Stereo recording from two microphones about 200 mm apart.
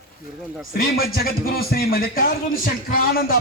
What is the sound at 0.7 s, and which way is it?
A man's voice, 50° left (ahead or behind).